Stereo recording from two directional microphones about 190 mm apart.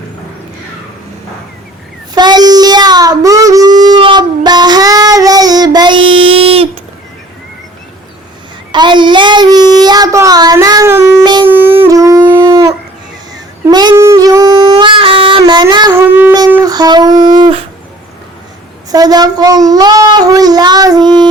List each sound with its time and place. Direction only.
2.1 s child singing: 20° right (ahead or behind)
8.7 s child singing: 25° right (ahead or behind)
11.4 s music: 10° right (ahead or behind)
16.1 s a sound: 10° right (ahead or behind)
18.9 s a child's voice: 20° right (ahead or behind)